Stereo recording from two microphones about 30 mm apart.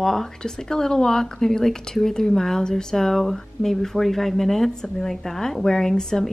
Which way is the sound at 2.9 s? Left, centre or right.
Centre.